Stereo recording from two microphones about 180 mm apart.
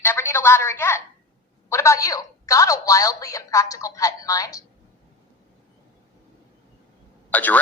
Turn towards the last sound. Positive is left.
turn(degrees=10)  # may be behind; listen again after turning